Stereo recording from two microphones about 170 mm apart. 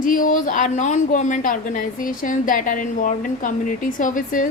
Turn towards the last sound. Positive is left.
turn(degrees=50)  # may be behind; listen again after turning